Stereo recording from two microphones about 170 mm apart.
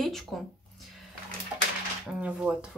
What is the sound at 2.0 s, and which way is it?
Speech, 5° right (ahead or behind).